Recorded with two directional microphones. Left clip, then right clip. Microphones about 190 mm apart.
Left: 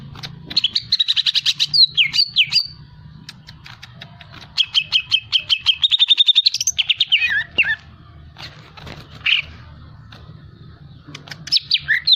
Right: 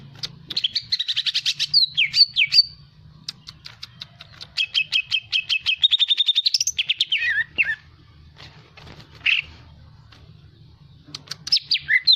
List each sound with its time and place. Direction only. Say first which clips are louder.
0.2 s bird: left 5 dB; 20° right (ahead or behind)
4.5 s bird: left 4 dB; 25° right (ahead or behind)
11.1 s chirp: left 3 dB; 20° right (ahead or behind)